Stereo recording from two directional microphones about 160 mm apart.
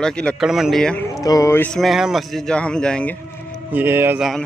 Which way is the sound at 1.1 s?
20° left (ahead or behind).